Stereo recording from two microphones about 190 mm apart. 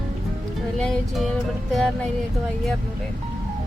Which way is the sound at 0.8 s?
Centre (ahead or behind).